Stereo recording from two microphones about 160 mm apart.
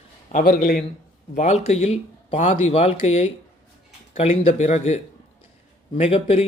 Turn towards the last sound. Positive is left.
turn(degrees=40)  # may be behind; listen again after turning